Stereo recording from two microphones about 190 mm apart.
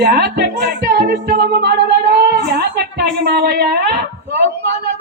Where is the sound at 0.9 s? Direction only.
60° right (ahead or behind).